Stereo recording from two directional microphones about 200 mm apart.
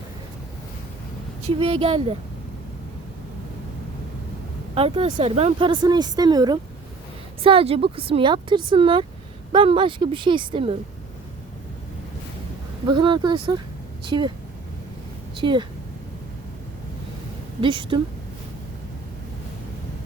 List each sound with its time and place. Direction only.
1.5 s a woman's voice: 25° right (ahead or behind)
4.7 s a woman's voice: 30° right (ahead or behind)
12.9 s a woman's voice: 25° right (ahead or behind)
15.4 s a woman's voice: 25° right (ahead or behind)
17.6 s a woman's voice: 25° right (ahead or behind)